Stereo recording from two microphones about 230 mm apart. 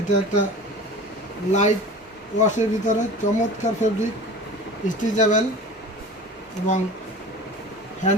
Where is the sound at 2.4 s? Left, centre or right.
Left.